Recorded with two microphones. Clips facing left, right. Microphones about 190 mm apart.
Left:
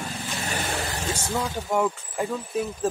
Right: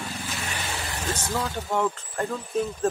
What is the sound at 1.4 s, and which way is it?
Speech, 10° left (ahead or behind).